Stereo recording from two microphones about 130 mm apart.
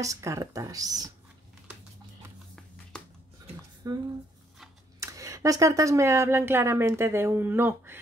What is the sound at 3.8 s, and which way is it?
Speech, 30° right (ahead or behind).